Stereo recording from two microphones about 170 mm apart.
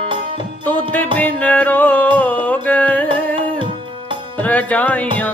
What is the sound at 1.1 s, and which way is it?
Music, 10° left (ahead or behind).